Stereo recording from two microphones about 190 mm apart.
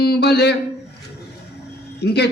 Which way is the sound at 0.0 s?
60° left (ahead or behind).